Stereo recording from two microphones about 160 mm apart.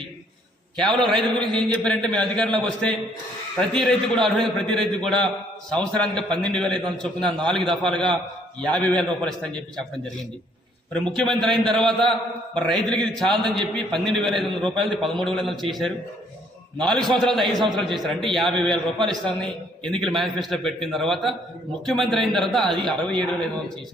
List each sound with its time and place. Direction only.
0.8 s a man's voice: 5° left (ahead or behind)
11.0 s a man's voice: centre (ahead or behind)
16.7 s a man's voice: 5° left (ahead or behind)